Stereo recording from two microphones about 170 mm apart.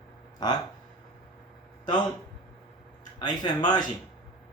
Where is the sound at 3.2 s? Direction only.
25° left (ahead or behind).